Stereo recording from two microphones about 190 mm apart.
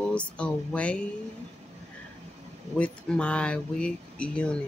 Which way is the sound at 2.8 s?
5° left (ahead or behind).